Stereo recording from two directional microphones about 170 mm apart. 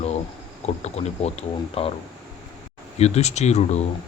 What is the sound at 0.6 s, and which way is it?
Speech, 40° left (ahead or behind).